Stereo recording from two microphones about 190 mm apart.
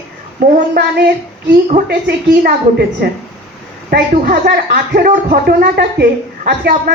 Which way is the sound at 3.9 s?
55° right (ahead or behind).